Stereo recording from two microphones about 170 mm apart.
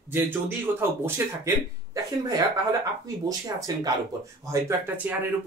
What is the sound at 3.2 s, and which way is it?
Speech, 20° right (ahead or behind).